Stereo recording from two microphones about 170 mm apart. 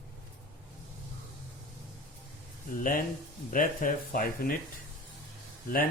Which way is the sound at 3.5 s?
55° left (ahead or behind).